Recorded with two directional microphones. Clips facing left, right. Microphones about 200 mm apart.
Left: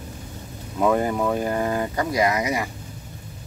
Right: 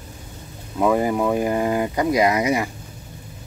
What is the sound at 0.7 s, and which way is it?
Speech, 5° right (ahead or behind).